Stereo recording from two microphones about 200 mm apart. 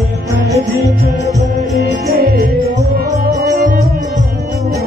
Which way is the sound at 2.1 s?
50° right (ahead or behind).